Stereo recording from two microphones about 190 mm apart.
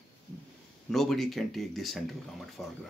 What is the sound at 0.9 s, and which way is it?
Speech, centre (ahead or behind).